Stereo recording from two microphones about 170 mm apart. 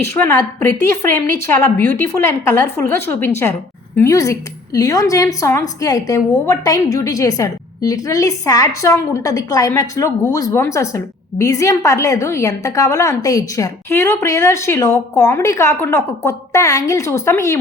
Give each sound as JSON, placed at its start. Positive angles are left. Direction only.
{"t": 0.0, "sound": "a woman's voice", "side_deg": 15}